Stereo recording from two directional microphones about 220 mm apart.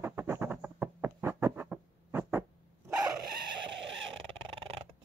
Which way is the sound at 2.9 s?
15° right (ahead or behind).